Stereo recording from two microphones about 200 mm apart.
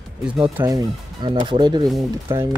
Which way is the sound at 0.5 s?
15° right (ahead or behind).